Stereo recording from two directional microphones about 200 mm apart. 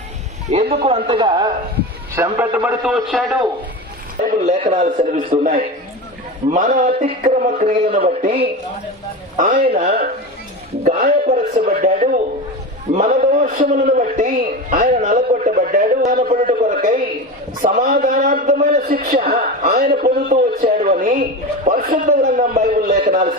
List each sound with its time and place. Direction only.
0.5 s a man's voice: 35° right (ahead or behind)
2.1 s a man's voice: 10° right (ahead or behind)
4.4 s a man's voice: 35° right (ahead or behind)
9.4 s a man's voice: 35° right (ahead or behind)
11.3 s a man's voice: 45° right (ahead or behind)